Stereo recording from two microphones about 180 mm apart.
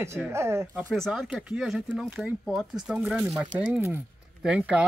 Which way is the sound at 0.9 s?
Centre (ahead or behind).